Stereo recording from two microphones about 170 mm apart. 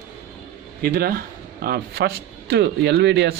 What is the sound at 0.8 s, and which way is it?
Speech, 60° right (ahead or behind).